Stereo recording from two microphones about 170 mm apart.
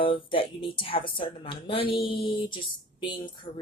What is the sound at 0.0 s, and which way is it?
Speech, 30° left (ahead or behind).